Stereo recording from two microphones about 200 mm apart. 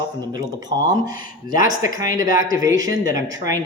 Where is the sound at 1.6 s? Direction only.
15° right (ahead or behind).